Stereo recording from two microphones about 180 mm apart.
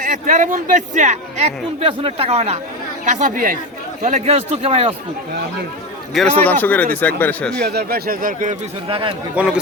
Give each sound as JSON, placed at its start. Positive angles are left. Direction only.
{"t": 0.3, "sound": "a man's voice", "side_deg": -45}
{"t": 4.0, "sound": "a man's voice", "side_deg": -35}
{"t": 6.1, "sound": "speech", "side_deg": 10}
{"t": 7.6, "sound": "speech", "side_deg": -65}
{"t": 8.9, "sound": "speech", "side_deg": -30}
{"t": 9.3, "sound": "a man's voice", "side_deg": -5}